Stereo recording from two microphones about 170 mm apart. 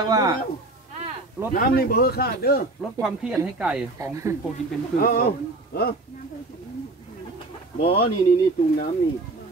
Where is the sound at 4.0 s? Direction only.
20° right (ahead or behind).